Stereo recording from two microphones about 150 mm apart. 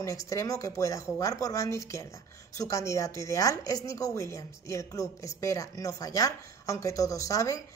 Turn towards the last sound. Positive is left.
turn(degrees=20)  # may be behind; listen again after turning